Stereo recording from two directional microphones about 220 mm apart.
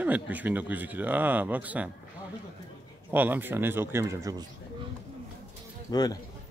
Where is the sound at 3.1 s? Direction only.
10° right (ahead or behind).